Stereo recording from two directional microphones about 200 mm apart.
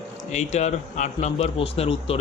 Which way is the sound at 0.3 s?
35° left (ahead or behind).